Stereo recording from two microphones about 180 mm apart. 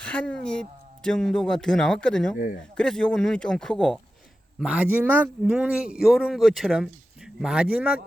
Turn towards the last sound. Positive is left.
turn(degrees=-5)  # may be behind; listen again after turning